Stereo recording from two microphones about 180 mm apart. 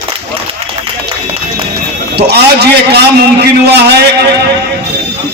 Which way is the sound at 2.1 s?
65° right (ahead or behind).